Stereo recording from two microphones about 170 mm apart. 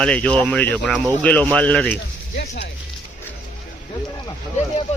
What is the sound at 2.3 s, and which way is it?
Speech, 70° left (ahead or behind).